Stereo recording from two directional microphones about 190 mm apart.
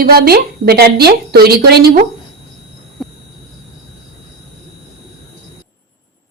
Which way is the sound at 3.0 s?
Centre (ahead or behind).